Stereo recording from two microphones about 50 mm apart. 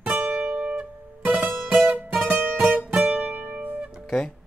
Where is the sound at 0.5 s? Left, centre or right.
Right.